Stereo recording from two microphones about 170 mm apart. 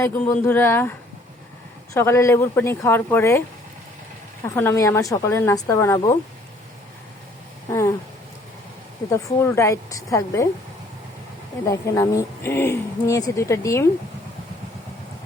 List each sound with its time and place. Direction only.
0.0 s a woman's voice: 15° left (ahead or behind)
4.4 s a woman's voice: 15° left (ahead or behind)
7.7 s a woman's voice: 15° left (ahead or behind)
9.0 s a woman's voice: 15° left (ahead or behind)
11.6 s a woman's voice: 20° left (ahead or behind)